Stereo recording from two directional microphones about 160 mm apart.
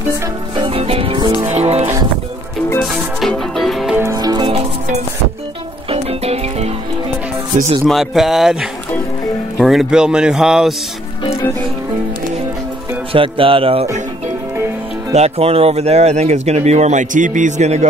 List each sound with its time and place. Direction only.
0.6 s music: 35° right (ahead or behind)
2.8 s music: centre (ahead or behind)
4.0 s music: 20° right (ahead or behind)
5.9 s music: 40° right (ahead or behind)
7.8 s speech: centre (ahead or behind)
13.1 s music: 35° right (ahead or behind)
15.1 s speech: 40° right (ahead or behind)